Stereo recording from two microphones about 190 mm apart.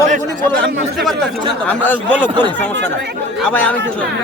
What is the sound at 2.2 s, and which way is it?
Speech, 25° right (ahead or behind).